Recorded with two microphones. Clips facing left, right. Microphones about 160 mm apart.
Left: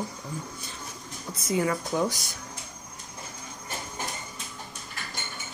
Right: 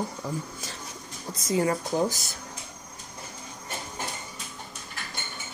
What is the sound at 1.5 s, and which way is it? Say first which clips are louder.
Speech: right 1 dB; 30° right (ahead or behind).